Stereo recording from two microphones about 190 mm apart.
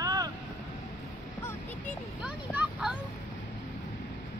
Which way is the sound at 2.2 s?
5° right (ahead or behind).